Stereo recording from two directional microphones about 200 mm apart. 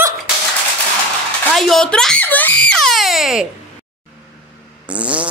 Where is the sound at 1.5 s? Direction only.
Centre (ahead or behind).